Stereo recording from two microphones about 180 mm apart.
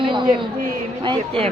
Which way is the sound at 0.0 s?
25° right (ahead or behind).